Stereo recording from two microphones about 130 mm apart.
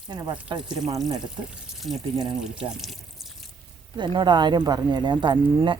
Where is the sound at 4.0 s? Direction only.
35° right (ahead or behind).